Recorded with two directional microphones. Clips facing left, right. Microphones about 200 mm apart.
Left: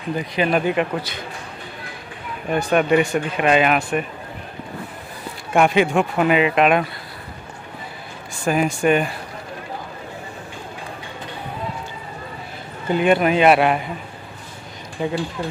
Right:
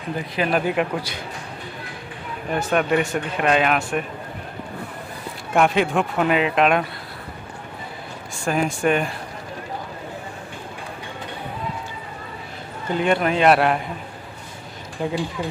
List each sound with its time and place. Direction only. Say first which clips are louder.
0.4 s speech: left 2 dB; centre (ahead or behind)
2.5 s speech: left 3 dB; 5° left (ahead or behind)
5.5 s speech: left 2 dB; centre (ahead or behind)
8.5 s speech: left 3 dB; 5° left (ahead or behind)
12.9 s speech: left 3 dB; 10° left (ahead or behind)
15.0 s speech: left 1 dB; centre (ahead or behind)